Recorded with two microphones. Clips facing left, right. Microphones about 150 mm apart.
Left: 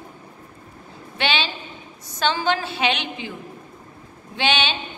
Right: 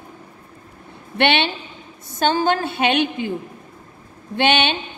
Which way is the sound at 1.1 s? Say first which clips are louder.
Right 6 dB; 60° right (ahead or behind).